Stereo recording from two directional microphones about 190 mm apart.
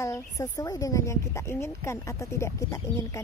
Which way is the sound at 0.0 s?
15° left (ahead or behind).